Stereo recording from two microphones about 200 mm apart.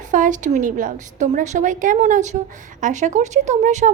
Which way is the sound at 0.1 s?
40° right (ahead or behind).